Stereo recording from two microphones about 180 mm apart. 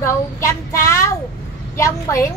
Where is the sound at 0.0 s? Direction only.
15° left (ahead or behind).